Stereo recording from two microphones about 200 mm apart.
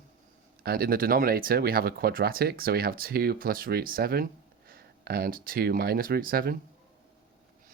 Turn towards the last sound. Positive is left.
turn(degrees=-45)  # may be behind; listen again after turning